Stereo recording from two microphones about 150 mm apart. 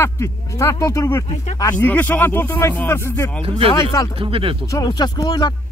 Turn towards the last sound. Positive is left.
turn(degrees=25)  # may be behind; listen again after turning